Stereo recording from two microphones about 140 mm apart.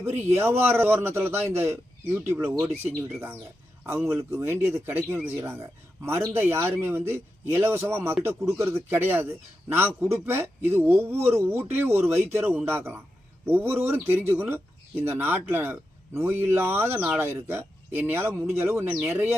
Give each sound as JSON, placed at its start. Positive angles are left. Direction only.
{"t": 0.0, "sound": "speech", "side_deg": -20}
{"t": 3.8, "sound": "speech", "side_deg": -20}